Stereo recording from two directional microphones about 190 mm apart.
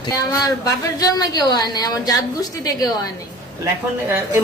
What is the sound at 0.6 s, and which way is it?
A woman's voice, 20° left (ahead or behind).